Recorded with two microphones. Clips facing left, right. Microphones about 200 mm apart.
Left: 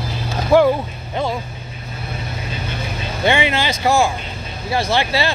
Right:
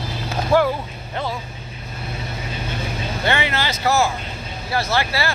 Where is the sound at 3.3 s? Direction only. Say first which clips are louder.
Left 5 dB; 15° left (ahead or behind).